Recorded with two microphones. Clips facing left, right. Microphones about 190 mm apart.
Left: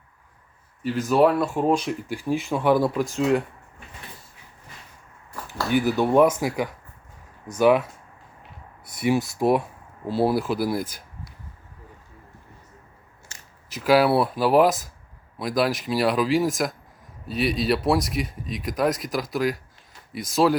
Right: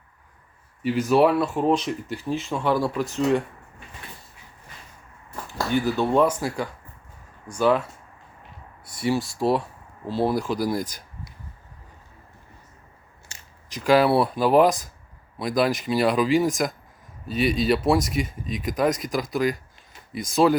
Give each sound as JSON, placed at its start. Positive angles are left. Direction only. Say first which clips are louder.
{"t": 0.8, "sound": "speech", "louder": "even", "side_deg": -10}
{"t": 2.1, "sound": "speech", "louder": "left 4 dB", "side_deg": 15}
{"t": 2.9, "sound": "speech", "louder": "even", "side_deg": 5}
{"t": 5.7, "sound": "speech", "louder": "left 2 dB", "side_deg": 10}
{"t": 9.0, "sound": "speech", "louder": "left 2 dB", "side_deg": 15}
{"t": 13.7, "sound": "speech", "louder": "even", "side_deg": 5}